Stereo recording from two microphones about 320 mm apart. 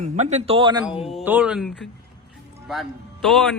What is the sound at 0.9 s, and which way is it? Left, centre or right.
Speech, centre.